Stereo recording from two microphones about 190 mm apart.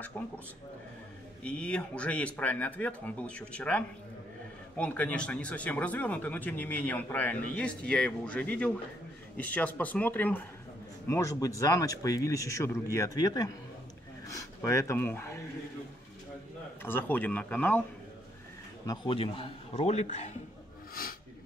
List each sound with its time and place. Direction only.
0.2 s speech: 10° left (ahead or behind)
1.4 s speech: 5° left (ahead or behind)
16.8 s speech: 10° left (ahead or behind)
18.9 s a man's voice: 30° left (ahead or behind)
20.9 s a sound: 50° left (ahead or behind)